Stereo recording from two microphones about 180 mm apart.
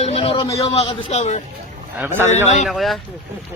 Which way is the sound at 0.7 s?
35° left (ahead or behind).